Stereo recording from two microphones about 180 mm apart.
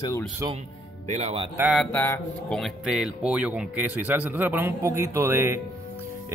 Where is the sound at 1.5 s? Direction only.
5° right (ahead or behind).